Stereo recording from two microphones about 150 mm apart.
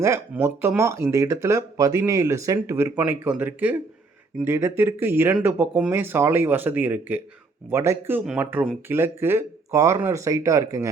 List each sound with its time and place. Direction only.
0.0 s speech: 20° right (ahead or behind)